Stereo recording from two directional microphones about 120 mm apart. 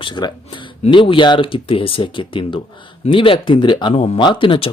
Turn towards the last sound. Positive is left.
turn(degrees=45)  # may be behind; listen again after turning